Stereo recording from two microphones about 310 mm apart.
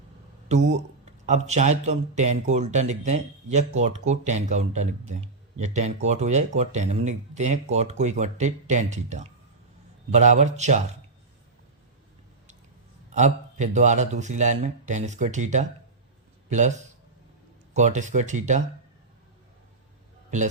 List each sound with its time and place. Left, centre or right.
0.4 s speech: right
13.1 s speech: right